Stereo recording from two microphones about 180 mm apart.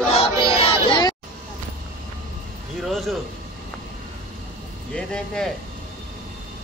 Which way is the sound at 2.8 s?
Centre (ahead or behind).